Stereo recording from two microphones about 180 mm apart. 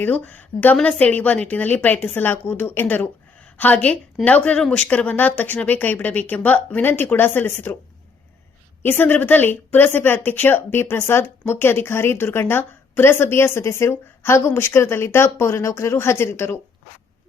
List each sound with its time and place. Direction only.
0.0 s speech: 10° left (ahead or behind)
8.8 s speech: 10° left (ahead or behind)